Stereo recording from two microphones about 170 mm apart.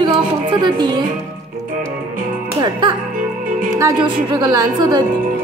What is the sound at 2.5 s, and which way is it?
Music, 25° right (ahead or behind).